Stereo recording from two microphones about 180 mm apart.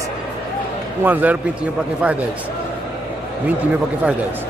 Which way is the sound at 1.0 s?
10° right (ahead or behind).